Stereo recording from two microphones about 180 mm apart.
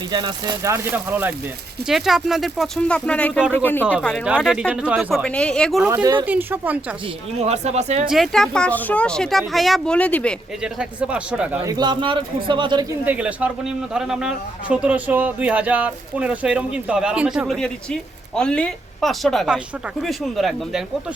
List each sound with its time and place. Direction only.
0.1 s a man's voice: 25° right (ahead or behind); by 3.8 s 10° left (ahead or behind)
4.0 s a man's voice: centre (ahead or behind)
5.9 s a man's voice: 20° right (ahead or behind)
6.2 s speech: 10° right (ahead or behind)
7.3 s speech: 35° right (ahead or behind)
8.1 s a man's voice: centre (ahead or behind)
10.6 s a man's voice: 5° right (ahead or behind)
11.6 s a man's voice: 20° right (ahead or behind)
13.1 s a man's voice: 5° right (ahead or behind)